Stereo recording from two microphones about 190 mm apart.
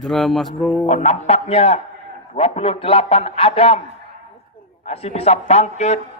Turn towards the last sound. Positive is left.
turn(degrees=35)  # may be behind; listen again after turning